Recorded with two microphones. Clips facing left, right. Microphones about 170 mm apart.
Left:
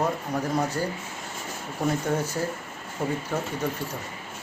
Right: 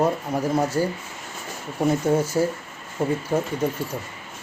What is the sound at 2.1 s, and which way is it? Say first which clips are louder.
Speech: right 6 dB; 10° right (ahead or behind).